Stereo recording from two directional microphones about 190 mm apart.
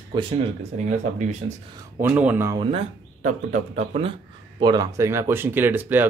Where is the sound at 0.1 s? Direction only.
25° right (ahead or behind).